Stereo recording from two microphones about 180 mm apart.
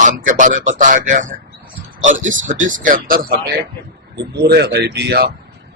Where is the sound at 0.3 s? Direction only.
45° right (ahead or behind).